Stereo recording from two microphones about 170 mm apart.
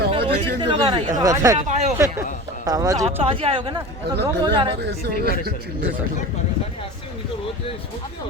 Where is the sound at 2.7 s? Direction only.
20° right (ahead or behind).